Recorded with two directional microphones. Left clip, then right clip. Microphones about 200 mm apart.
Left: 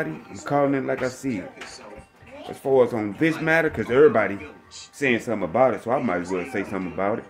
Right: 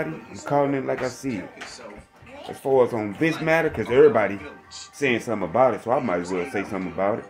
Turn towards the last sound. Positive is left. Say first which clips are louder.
# right 1 dB
turn(degrees=15)  # may be behind; listen again after turning